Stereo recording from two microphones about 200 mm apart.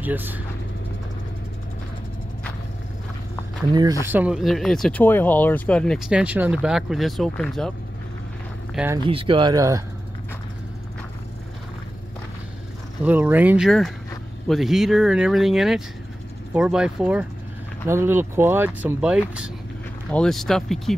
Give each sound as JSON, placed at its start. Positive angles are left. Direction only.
{"t": 0.0, "sound": "speech", "side_deg": -10}
{"t": 4.1, "sound": "speech", "side_deg": -5}
{"t": 8.9, "sound": "speech", "side_deg": -25}
{"t": 13.0, "sound": "speech", "side_deg": -10}